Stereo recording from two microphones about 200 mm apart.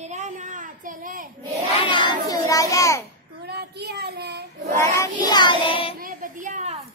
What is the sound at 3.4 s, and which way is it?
Cat, 55° right (ahead or behind).